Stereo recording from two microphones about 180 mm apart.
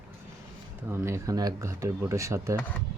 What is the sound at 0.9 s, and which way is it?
Speech, 15° right (ahead or behind).